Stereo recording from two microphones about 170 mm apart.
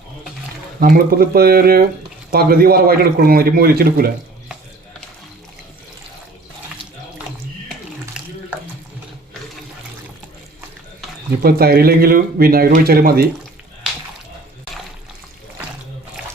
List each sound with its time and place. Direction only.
0.8 s speech: 60° right (ahead or behind)
8.1 s water: 5° right (ahead or behind)
11.3 s speech: 65° right (ahead or behind)